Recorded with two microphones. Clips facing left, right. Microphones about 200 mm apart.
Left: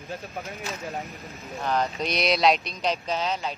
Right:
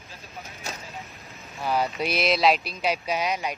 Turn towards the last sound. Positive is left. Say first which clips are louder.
# right 1 dB
turn(degrees=-15)  # may be behind; listen again after turning